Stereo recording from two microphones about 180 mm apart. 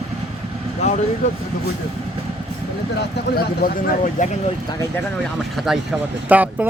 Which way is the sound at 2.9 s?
60° left (ahead or behind).